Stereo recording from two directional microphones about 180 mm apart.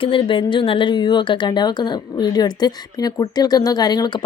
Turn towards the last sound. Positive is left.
turn(degrees=25)  # may be behind; listen again after turning